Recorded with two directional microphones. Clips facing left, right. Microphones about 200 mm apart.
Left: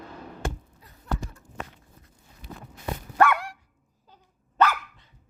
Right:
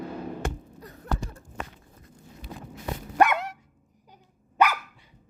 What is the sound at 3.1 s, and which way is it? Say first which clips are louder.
Dog: even; 20° right (ahead or behind).